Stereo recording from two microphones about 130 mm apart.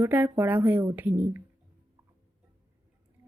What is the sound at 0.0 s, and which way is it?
Speech, 15° right (ahead or behind).